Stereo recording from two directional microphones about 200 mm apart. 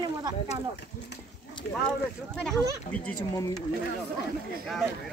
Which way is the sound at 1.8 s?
5° left (ahead or behind).